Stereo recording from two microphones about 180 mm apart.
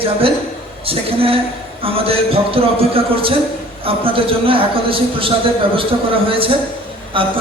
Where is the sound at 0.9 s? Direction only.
30° right (ahead or behind).